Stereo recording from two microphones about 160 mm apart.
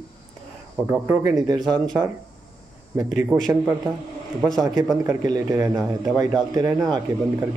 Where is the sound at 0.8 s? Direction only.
10° right (ahead or behind).